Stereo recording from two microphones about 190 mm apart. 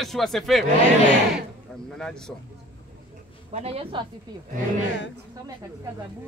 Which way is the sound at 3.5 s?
30° right (ahead or behind).